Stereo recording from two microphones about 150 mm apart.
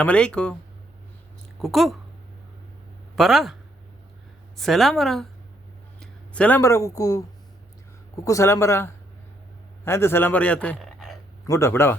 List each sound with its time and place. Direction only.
0.0 s speech: 5° left (ahead or behind)
1.6 s a woman's voice: centre (ahead or behind)
3.2 s a woman's voice: centre (ahead or behind)
4.5 s a woman's voice: centre (ahead or behind)
6.0 s a sound: 10° left (ahead or behind)
6.6 s a man's voice: 20° left (ahead or behind); by 11.2 s centre (ahead or behind)
11.4 s speech: 20° left (ahead or behind)